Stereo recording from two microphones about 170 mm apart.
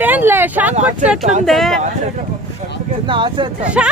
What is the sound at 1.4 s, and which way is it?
Speech, centre (ahead or behind).